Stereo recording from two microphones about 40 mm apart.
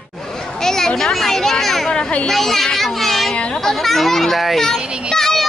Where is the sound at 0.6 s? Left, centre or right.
Centre.